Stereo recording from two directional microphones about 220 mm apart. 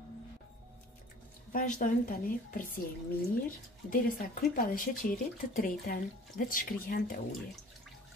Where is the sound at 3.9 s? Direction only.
40° left (ahead or behind).